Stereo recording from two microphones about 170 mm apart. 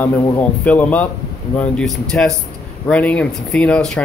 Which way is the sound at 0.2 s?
10° left (ahead or behind).